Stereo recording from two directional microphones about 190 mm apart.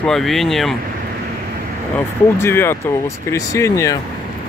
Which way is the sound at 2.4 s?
10° left (ahead or behind).